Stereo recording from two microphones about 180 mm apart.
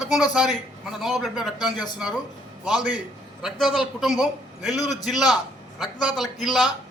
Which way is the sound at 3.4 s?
Centre (ahead or behind).